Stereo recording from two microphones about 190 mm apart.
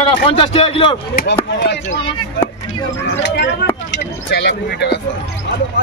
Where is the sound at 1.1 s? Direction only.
60° left (ahead or behind).